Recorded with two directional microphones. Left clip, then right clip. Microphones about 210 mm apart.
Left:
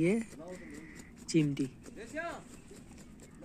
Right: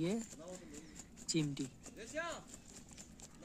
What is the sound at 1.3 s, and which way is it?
Speech, centre (ahead or behind).